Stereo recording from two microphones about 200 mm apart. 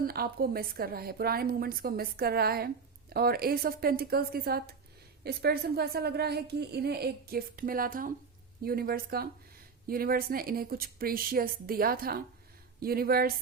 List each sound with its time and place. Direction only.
0.0 s a woman's voice: 50° right (ahead or behind)